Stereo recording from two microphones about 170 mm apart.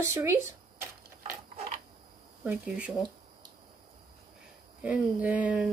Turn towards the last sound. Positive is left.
turn(degrees=-5)  # may be behind; listen again after turning